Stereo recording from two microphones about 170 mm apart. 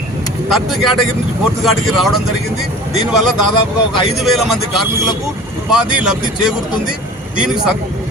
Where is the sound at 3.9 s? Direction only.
Centre (ahead or behind).